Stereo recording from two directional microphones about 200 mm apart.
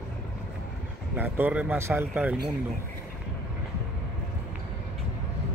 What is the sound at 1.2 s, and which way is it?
Speech, 10° right (ahead or behind).